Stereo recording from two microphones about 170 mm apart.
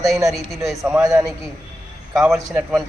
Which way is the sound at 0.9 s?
20° right (ahead or behind).